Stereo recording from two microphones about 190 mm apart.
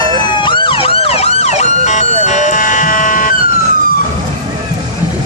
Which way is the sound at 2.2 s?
40° left (ahead or behind).